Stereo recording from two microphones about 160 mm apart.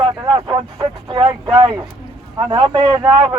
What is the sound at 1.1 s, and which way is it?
Speech, 35° right (ahead or behind).